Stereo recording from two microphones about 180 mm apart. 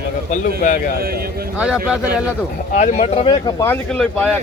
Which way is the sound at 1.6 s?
5° right (ahead or behind).